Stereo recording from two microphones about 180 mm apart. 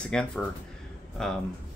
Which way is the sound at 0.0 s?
5° left (ahead or behind).